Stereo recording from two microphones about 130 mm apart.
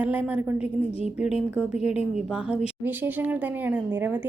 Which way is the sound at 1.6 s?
5° right (ahead or behind).